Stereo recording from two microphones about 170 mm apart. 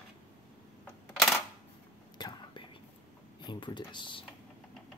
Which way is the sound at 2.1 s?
25° left (ahead or behind).